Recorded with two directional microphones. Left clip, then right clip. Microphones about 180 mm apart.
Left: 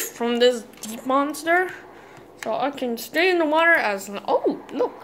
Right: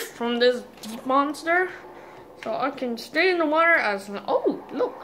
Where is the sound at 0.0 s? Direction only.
20° left (ahead or behind).